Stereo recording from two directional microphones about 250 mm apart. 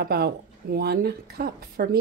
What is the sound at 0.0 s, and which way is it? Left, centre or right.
Speech, right.